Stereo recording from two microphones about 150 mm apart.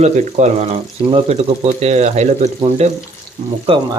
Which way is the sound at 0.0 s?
50° right (ahead or behind).